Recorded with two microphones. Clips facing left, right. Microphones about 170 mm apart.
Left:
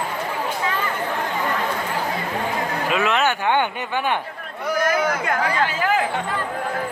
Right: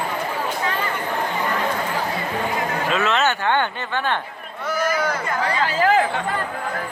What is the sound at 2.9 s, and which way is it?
Speech, 15° left (ahead or behind).